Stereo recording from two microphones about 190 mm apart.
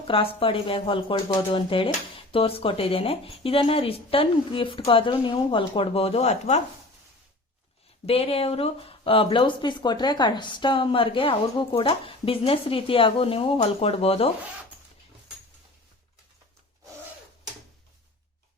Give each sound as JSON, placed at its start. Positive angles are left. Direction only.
{"t": 0.1, "sound": "speech", "side_deg": 30}
{"t": 8.0, "sound": "speech", "side_deg": 30}